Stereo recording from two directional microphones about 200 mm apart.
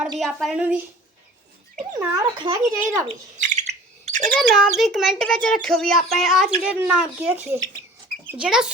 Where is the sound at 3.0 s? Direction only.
40° right (ahead or behind).